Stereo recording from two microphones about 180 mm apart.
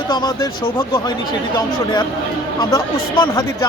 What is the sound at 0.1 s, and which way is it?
Speech, 20° left (ahead or behind).